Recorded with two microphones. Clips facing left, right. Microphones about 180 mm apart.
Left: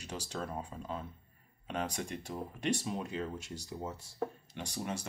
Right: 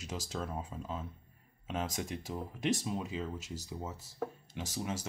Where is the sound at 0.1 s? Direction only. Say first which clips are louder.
Even; 5° right (ahead or behind).